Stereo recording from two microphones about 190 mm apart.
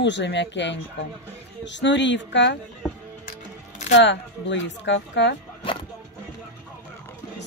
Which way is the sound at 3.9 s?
70° left (ahead or behind).